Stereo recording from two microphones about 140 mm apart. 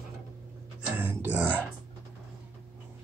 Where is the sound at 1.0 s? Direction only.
15° right (ahead or behind).